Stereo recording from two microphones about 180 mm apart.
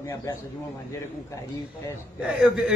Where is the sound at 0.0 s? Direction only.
15° left (ahead or behind).